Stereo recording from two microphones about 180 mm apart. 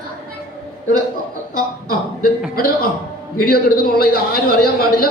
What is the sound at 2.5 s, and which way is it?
A woman's voice, 55° left (ahead or behind).